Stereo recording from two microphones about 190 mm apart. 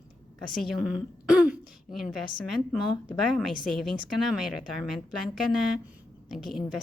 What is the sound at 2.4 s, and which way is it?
A woman's voice, centre (ahead or behind).